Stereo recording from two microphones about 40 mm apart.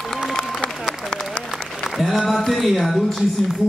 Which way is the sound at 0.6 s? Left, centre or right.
Left.